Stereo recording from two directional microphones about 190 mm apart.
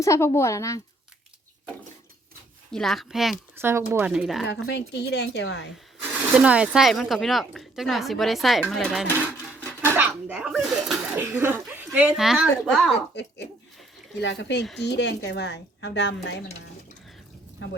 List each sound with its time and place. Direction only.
0.0 s a woman's voice: 15° left (ahead or behind)
2.7 s a woman's voice: centre (ahead or behind)
3.6 s a woman's voice: 10° right (ahead or behind)
4.4 s a woman's voice: 65° left (ahead or behind)
5.7 s a woman's voice: 5° right (ahead or behind)
9.6 s a sound: 10° right (ahead or behind)
11.2 s speech: 10° right (ahead or behind)
12.9 s a woman's voice: 65° left (ahead or behind)